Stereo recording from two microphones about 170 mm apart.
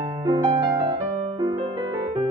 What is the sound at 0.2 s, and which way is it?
Music, 25° right (ahead or behind).